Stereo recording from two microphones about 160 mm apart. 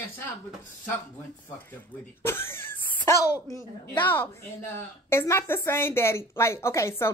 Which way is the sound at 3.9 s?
10° left (ahead or behind).